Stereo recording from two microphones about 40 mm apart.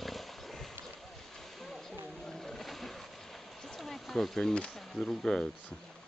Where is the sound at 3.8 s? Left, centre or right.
Centre.